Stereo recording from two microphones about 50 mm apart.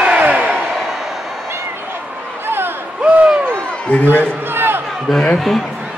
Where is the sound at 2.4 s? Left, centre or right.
Right.